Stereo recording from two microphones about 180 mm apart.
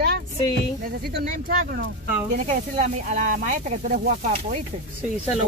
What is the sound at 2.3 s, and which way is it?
Speech, 45° right (ahead or behind).